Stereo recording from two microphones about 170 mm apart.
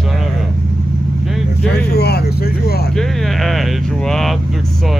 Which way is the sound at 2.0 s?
70° left (ahead or behind).